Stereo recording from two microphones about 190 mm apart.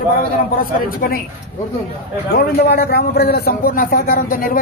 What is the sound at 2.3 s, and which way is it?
A man's voice, 55° left (ahead or behind).